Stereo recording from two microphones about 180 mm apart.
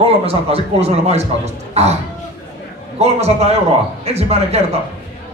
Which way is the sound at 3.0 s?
35° right (ahead or behind).